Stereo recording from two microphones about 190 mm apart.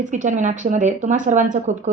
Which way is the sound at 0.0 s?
40° right (ahead or behind).